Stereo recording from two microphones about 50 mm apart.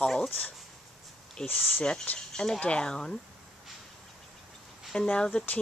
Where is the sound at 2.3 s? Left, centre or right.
Centre.